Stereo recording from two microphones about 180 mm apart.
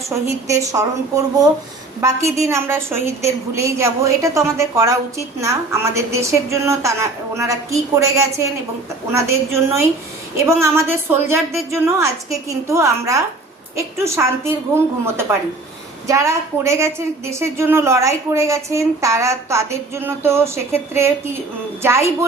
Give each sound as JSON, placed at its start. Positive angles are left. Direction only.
{"t": 0.1, "sound": "a woman's voice", "side_deg": -15}